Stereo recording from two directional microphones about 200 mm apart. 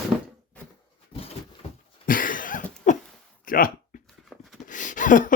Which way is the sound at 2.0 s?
45° left (ahead or behind).